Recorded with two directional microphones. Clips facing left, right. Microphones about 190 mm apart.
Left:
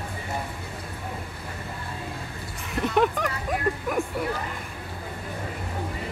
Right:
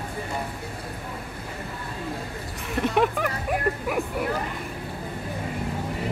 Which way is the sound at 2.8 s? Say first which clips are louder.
Even; centre (ahead or behind).